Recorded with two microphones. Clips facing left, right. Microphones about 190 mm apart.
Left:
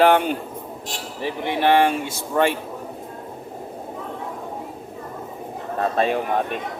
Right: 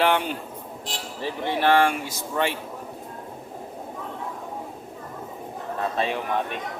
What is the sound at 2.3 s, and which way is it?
Speech, 50° left (ahead or behind).